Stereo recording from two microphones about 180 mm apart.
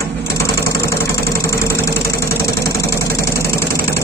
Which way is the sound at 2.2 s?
15° left (ahead or behind).